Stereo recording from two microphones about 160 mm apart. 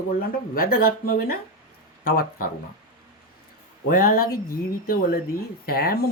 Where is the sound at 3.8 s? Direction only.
65° left (ahead or behind).